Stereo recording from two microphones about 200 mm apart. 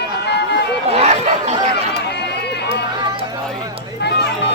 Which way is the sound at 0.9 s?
35° right (ahead or behind).